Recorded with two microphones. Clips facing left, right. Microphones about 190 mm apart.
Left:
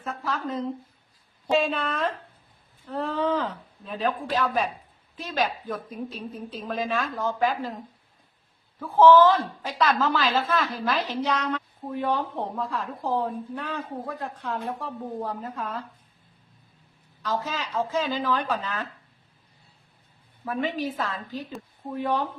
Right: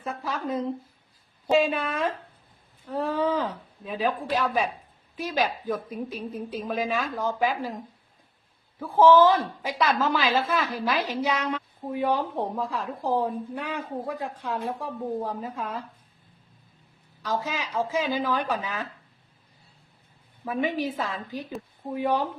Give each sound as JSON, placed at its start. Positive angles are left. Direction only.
{"t": 0.0, "sound": "a woman's voice", "side_deg": -10}
{"t": 8.8, "sound": "a woman's voice", "side_deg": -10}
{"t": 17.2, "sound": "a woman's voice", "side_deg": -10}
{"t": 20.4, "sound": "a woman's voice", "side_deg": -15}